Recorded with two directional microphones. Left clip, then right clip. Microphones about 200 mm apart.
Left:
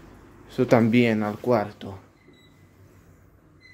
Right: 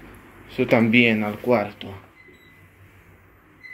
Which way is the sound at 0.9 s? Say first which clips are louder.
Right 4 dB; 30° left (ahead or behind).